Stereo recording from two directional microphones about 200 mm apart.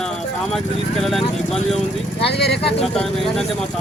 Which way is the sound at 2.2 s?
55° left (ahead or behind).